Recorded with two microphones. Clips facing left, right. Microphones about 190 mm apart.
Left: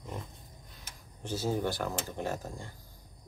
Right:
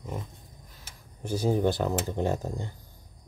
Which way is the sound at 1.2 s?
15° right (ahead or behind).